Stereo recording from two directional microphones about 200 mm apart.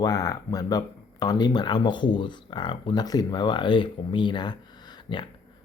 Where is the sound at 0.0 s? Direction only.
20° left (ahead or behind).